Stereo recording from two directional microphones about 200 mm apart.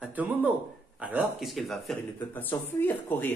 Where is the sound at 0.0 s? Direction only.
10° right (ahead or behind).